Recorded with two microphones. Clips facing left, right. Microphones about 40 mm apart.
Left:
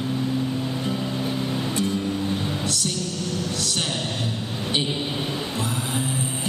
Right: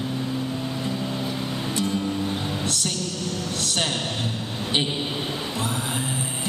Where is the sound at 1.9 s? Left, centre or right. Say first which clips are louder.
Left 1 dB; right.